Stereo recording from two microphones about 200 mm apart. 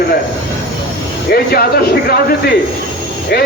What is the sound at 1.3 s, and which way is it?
Speech, 50° left (ahead or behind).